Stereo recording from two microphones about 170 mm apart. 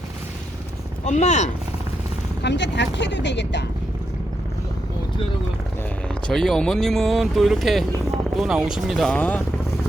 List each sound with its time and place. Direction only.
1.0 s speech: 45° left (ahead or behind)
2.4 s speech: 90° left
6.2 s speech: centre (ahead or behind)